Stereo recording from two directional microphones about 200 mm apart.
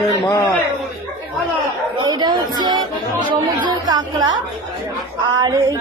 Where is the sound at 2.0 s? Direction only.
20° right (ahead or behind).